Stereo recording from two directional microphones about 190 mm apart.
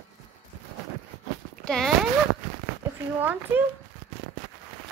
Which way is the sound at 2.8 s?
10° right (ahead or behind).